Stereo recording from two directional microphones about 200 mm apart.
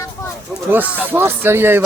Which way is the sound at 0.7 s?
10° right (ahead or behind).